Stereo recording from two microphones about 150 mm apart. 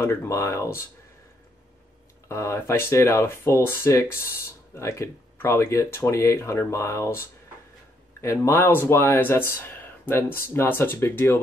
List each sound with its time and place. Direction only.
0.0 s speech: 15° left (ahead or behind)
2.2 s speech: 20° left (ahead or behind)